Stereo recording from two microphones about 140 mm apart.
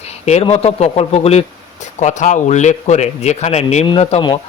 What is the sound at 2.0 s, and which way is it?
Speech, 60° left (ahead or behind).